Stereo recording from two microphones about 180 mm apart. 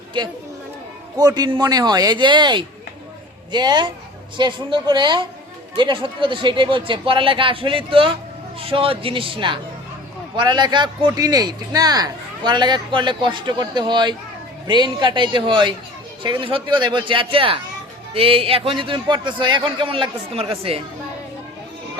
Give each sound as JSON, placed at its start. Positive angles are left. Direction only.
{"t": 0.1, "sound": "speech", "side_deg": -25}